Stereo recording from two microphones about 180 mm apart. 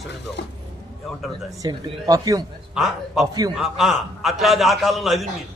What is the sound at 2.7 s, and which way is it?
A man's voice, centre (ahead or behind).